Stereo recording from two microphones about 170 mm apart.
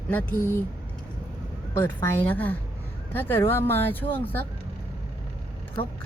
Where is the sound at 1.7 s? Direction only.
15° left (ahead or behind).